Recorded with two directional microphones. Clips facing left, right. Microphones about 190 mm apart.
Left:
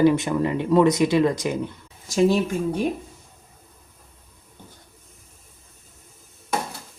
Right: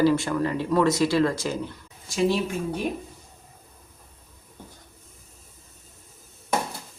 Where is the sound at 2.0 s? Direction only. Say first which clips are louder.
Left 4 dB; 40° left (ahead or behind).